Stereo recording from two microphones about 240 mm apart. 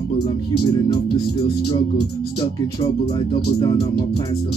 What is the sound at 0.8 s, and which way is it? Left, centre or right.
Music, centre.